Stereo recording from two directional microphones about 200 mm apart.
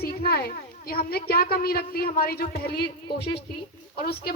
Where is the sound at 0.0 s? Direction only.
50° left (ahead or behind).